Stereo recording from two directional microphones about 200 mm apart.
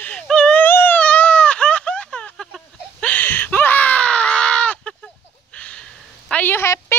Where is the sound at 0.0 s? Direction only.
5° left (ahead or behind).